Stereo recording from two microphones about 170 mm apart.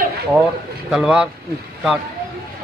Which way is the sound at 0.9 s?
5° right (ahead or behind).